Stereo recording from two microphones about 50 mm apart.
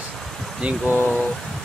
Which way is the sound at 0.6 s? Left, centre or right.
Right.